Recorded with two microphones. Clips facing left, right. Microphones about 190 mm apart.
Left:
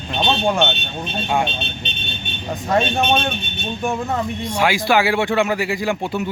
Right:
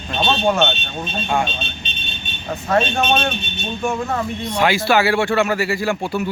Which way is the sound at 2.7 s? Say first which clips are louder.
Even; 15° left (ahead or behind).